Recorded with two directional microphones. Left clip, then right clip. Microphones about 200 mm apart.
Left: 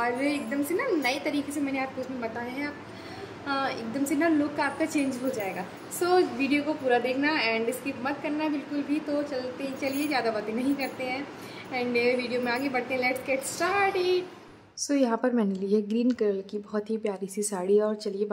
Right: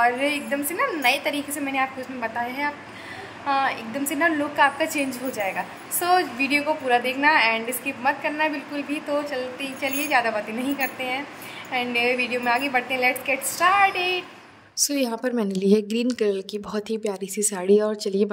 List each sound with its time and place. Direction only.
0.0 s a woman's voice: centre (ahead or behind)
14.8 s a woman's voice: 45° right (ahead or behind)